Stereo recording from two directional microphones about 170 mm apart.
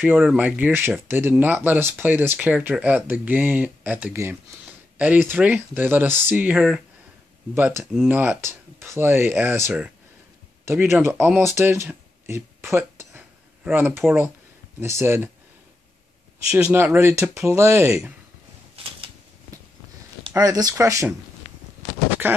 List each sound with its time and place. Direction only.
0.0 s speech: 10° right (ahead or behind)
16.5 s speech: 10° right (ahead or behind)
18.8 s typewriter: 35° right (ahead or behind)
20.2 s speech: 20° right (ahead or behind)
22.2 s speech: 15° right (ahead or behind)